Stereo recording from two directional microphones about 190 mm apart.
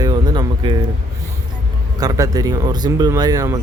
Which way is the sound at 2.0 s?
20° right (ahead or behind).